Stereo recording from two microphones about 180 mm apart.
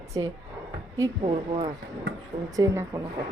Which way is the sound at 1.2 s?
30° right (ahead or behind).